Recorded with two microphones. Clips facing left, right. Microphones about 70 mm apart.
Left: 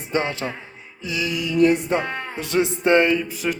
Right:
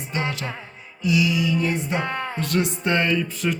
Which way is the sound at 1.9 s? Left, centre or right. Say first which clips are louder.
Even; centre.